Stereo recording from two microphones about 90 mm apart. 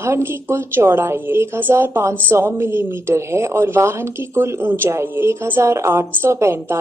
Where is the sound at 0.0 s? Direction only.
30° right (ahead or behind).